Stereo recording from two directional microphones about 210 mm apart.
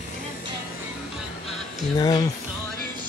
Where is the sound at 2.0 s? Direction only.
20° left (ahead or behind).